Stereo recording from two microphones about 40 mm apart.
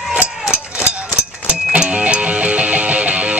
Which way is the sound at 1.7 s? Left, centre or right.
Right.